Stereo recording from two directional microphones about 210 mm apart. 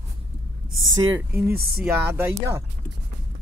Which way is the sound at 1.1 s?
10° right (ahead or behind).